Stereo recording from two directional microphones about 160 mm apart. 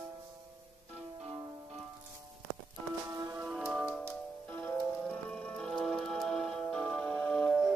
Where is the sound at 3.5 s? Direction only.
5° right (ahead or behind).